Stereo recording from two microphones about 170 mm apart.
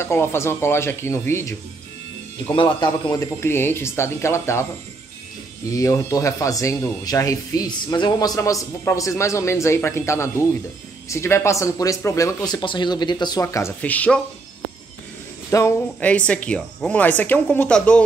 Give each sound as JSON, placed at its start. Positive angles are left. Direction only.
{"t": 0.0, "sound": "speech", "side_deg": 15}
{"t": 2.4, "sound": "speech", "side_deg": 30}
{"t": 5.7, "sound": "speech", "side_deg": 20}
{"t": 15.5, "sound": "speech", "side_deg": 10}